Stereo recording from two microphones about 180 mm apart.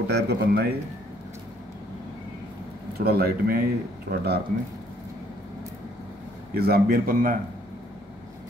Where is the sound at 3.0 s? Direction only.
60° right (ahead or behind).